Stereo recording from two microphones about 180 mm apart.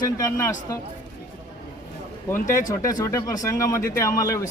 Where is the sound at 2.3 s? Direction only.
15° left (ahead or behind).